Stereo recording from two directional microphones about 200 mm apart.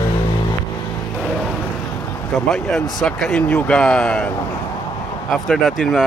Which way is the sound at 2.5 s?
Centre (ahead or behind).